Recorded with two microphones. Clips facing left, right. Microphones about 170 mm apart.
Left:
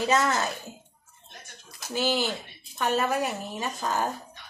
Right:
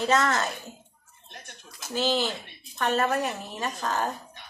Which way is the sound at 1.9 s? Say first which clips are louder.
Even; 10° left (ahead or behind).